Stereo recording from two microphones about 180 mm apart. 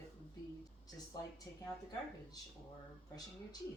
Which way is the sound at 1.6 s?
20° left (ahead or behind).